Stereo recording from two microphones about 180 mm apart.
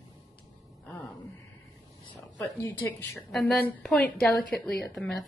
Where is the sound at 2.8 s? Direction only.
Centre (ahead or behind).